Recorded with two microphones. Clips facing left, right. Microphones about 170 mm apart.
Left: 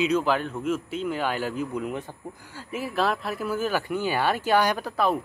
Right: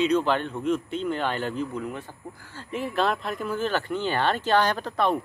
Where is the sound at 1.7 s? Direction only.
15° left (ahead or behind).